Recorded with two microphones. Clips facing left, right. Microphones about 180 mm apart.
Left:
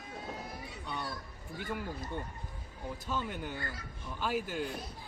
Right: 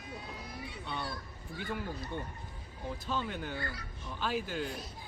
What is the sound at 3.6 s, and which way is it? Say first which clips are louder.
Speech: right 2 dB; 45° left (ahead or behind).